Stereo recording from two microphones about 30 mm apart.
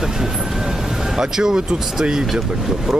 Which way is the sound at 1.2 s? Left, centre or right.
Centre.